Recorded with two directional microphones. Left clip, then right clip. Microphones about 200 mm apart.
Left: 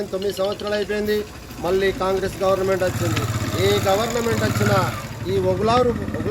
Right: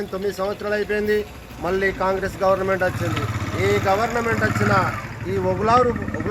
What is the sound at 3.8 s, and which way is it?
A man's voice, centre (ahead or behind).